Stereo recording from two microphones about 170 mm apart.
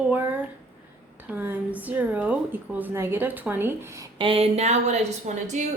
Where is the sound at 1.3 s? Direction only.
10° right (ahead or behind).